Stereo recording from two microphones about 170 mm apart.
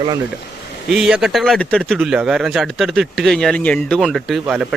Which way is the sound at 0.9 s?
Centre (ahead or behind).